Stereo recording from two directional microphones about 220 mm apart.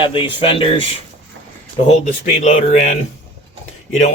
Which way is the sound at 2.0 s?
35° left (ahead or behind).